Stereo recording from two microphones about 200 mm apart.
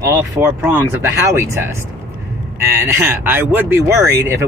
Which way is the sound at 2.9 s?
10° right (ahead or behind).